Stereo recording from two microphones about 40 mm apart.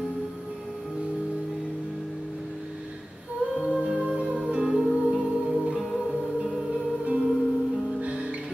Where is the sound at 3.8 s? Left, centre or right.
Right.